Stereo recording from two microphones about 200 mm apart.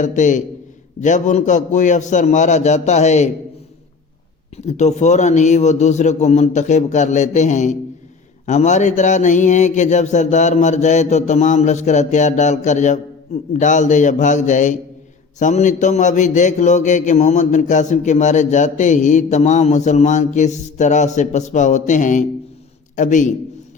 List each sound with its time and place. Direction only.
0.0 s a man's voice: 40° left (ahead or behind)
4.5 s a man's voice: 35° left (ahead or behind)